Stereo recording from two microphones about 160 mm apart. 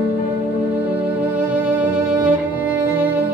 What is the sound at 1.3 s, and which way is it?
Music, 10° right (ahead or behind).